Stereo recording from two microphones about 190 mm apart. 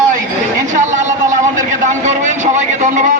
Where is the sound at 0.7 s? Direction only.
40° right (ahead or behind).